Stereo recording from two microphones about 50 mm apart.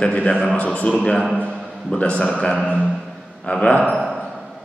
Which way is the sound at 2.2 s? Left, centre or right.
Centre.